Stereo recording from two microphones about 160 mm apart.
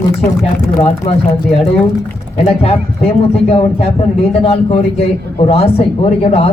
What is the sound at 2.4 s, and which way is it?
A man's voice, 40° left (ahead or behind).